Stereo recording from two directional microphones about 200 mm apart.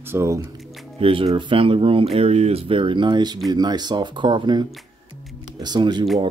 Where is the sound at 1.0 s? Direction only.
30° right (ahead or behind).